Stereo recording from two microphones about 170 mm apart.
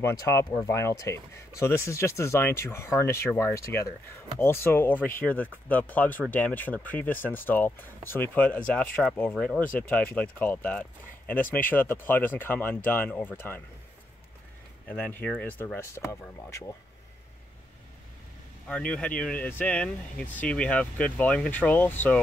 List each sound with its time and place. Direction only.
0.0 s speech: 20° left (ahead or behind)
14.9 s speech: 10° left (ahead or behind)
18.7 s speech: 5° left (ahead or behind)